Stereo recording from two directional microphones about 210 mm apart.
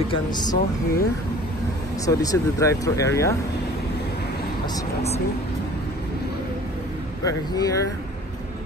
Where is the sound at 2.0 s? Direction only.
15° left (ahead or behind).